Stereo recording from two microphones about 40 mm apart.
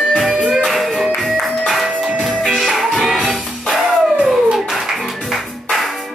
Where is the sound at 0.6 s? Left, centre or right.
Centre.